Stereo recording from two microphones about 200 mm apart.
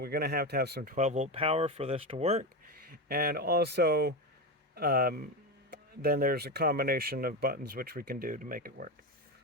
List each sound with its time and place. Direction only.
0.0 s speech: 50° right (ahead or behind); by 2.5 s 35° right (ahead or behind)
2.6 s speech: 50° right (ahead or behind)